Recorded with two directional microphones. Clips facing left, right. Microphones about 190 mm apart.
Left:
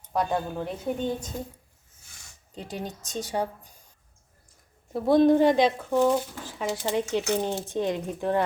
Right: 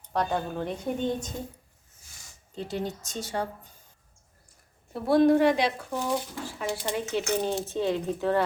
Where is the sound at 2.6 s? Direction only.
15° left (ahead or behind).